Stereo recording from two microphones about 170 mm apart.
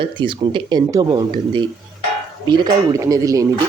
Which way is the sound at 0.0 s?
30° right (ahead or behind).